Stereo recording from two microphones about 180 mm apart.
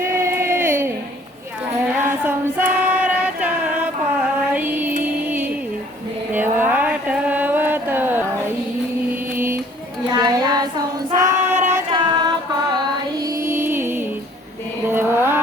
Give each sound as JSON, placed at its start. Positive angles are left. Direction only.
{"t": 0.0, "sound": "a sound", "side_deg": -15}
{"t": 2.0, "sound": "female singing", "side_deg": -10}
{"t": 4.5, "sound": "music", "side_deg": -10}
{"t": 6.3, "sound": "a sound", "side_deg": -10}
{"t": 9.3, "sound": "music", "side_deg": -15}
{"t": 10.2, "sound": "child singing", "side_deg": -25}
{"t": 11.2, "sound": "female singing", "side_deg": -40}
{"t": 11.9, "sound": "music", "side_deg": -25}
{"t": 14.8, "sound": "mantra", "side_deg": -10}